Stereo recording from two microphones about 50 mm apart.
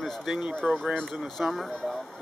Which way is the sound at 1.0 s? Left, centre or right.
Centre.